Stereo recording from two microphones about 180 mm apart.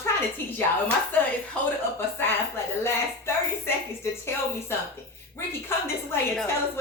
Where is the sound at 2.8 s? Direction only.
15° left (ahead or behind).